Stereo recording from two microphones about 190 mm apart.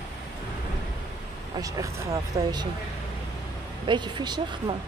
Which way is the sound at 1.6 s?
15° right (ahead or behind).